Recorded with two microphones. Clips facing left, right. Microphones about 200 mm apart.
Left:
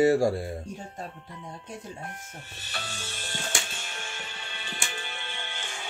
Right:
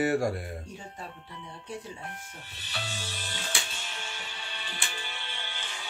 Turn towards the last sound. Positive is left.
turn(degrees=50)  # may be behind; listen again after turning